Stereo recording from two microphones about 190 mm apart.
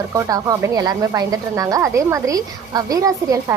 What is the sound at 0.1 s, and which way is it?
A woman's voice, 20° right (ahead or behind).